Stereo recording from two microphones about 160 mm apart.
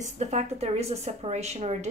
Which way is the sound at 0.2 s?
45° right (ahead or behind).